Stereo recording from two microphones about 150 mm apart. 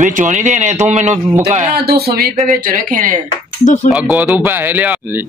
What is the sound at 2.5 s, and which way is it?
Speech, 65° right (ahead or behind).